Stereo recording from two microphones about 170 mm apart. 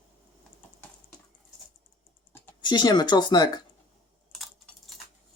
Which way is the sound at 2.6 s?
25° left (ahead or behind).